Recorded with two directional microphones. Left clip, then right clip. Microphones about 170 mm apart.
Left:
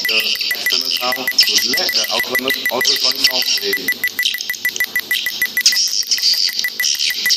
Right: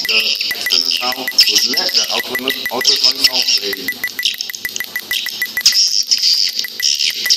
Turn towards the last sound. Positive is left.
turn(degrees=-20)  # may be behind; listen again after turning